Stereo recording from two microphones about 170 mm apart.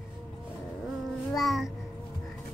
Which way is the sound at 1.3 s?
Centre (ahead or behind).